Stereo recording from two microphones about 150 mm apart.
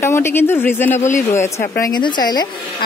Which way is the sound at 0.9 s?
55° left (ahead or behind).